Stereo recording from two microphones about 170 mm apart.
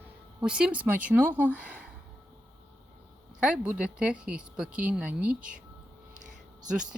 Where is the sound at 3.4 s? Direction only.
5° right (ahead or behind).